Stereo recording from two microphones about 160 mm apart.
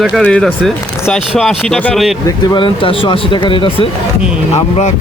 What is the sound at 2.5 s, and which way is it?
Speech, 30° left (ahead or behind).